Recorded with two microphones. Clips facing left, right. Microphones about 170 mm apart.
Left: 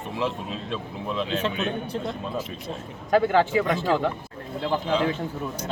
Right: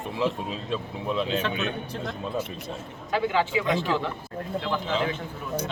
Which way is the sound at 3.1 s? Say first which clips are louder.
Left 5 dB; 50° left (ahead or behind).